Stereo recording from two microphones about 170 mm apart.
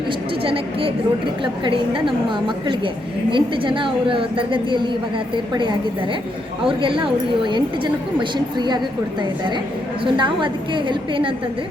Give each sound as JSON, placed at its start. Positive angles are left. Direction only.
{"t": 0.4, "sound": "a woman's voice", "side_deg": -35}
{"t": 10.0, "sound": "a woman's voice", "side_deg": -30}